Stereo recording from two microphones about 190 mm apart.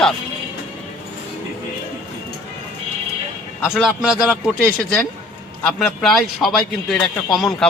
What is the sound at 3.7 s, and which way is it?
A man's voice, 5° right (ahead or behind).